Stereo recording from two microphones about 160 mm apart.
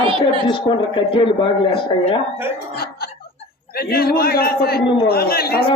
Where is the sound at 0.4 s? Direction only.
30° left (ahead or behind).